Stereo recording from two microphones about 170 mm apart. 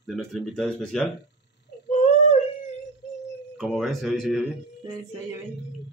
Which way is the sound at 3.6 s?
Centre (ahead or behind).